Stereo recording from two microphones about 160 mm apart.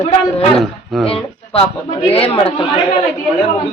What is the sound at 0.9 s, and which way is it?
Speech, centre (ahead or behind).